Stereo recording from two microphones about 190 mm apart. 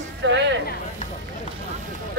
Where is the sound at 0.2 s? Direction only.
70° right (ahead or behind).